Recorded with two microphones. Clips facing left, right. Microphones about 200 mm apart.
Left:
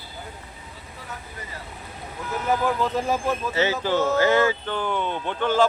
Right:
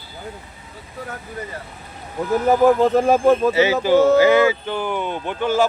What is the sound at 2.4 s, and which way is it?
Speech, 45° right (ahead or behind).